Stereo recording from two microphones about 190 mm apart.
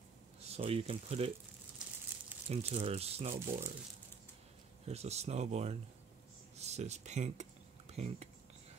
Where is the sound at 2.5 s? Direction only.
30° right (ahead or behind).